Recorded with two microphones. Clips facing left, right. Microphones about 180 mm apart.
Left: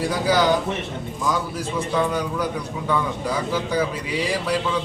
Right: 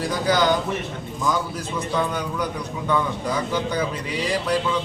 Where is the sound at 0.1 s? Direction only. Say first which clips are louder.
Even; 5° left (ahead or behind).